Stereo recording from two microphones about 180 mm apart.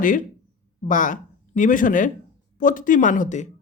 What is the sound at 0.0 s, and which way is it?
Speech, 50° left (ahead or behind).